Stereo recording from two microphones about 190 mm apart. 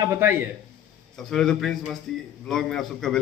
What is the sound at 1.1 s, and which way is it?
Speech, centre (ahead or behind).